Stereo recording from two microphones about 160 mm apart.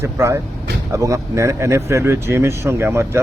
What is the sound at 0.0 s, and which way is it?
Speech, 15° right (ahead or behind).